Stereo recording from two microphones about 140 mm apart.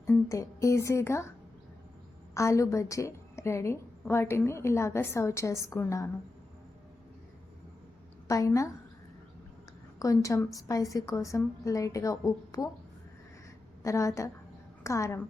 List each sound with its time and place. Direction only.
0.3 s a woman's voice: 20° left (ahead or behind)
2.3 s a woman's voice: 20° left (ahead or behind)
8.3 s a woman's voice: 25° left (ahead or behind)
10.0 s a woman's voice: 25° left (ahead or behind)
13.8 s a woman's voice: 20° left (ahead or behind)